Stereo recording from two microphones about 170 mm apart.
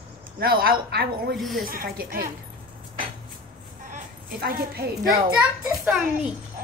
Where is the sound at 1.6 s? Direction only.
60° right (ahead or behind).